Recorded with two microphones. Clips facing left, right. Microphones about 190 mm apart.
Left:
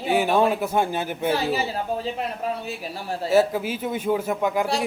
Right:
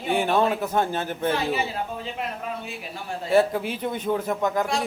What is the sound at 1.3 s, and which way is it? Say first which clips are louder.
Speech: left 2 dB; 35° left (ahead or behind).